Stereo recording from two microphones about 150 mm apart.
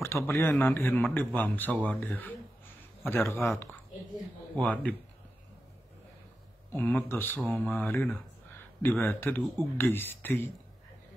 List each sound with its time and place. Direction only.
0.0 s speech: 15° left (ahead or behind)
6.7 s speech: 10° left (ahead or behind)